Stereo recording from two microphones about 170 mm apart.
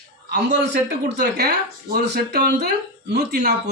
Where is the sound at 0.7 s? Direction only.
70° right (ahead or behind).